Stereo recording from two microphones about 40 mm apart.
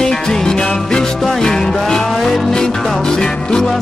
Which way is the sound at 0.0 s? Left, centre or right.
Centre.